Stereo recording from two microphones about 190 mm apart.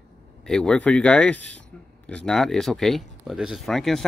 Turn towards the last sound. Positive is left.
turn(degrees=0)  # may be behind; listen again after turning